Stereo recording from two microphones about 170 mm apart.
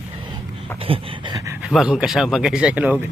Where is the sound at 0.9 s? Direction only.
30° right (ahead or behind).